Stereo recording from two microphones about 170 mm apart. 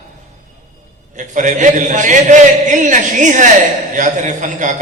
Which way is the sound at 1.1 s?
45° right (ahead or behind).